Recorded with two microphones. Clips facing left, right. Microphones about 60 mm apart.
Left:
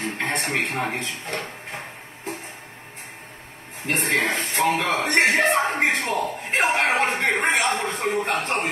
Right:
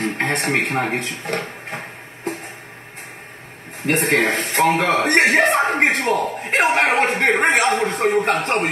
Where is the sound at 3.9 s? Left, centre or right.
Right.